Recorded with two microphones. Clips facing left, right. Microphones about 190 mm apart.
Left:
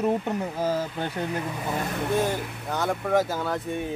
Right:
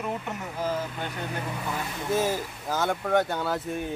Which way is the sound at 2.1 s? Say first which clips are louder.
Right 1 dB; centre (ahead or behind).